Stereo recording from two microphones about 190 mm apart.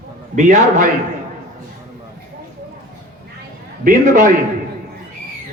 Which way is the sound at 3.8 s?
45° right (ahead or behind).